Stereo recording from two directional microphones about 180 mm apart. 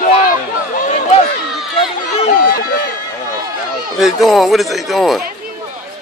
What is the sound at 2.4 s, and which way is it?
Run, 55° left (ahead or behind).